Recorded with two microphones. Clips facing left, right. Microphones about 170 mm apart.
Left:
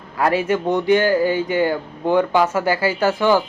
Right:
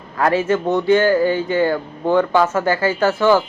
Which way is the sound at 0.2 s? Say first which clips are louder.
Right 1 dB; 15° left (ahead or behind).